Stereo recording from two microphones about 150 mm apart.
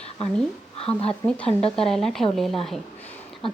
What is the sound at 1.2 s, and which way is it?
Speech, 5° left (ahead or behind).